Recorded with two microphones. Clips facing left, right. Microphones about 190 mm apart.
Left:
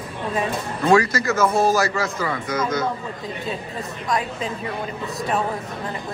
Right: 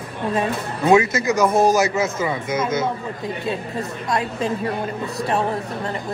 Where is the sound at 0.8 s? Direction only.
20° right (ahead or behind).